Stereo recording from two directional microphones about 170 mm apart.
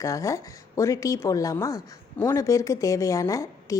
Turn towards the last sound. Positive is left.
turn(degrees=20)  # may be behind; listen again after turning